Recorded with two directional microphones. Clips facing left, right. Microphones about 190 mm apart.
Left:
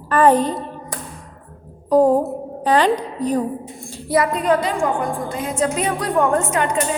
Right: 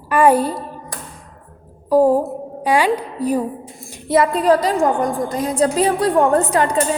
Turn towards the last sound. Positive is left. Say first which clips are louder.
# right 3 dB
turn(degrees=-35)  # may be behind; listen again after turning